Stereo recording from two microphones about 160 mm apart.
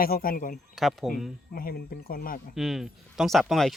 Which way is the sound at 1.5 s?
65° left (ahead or behind).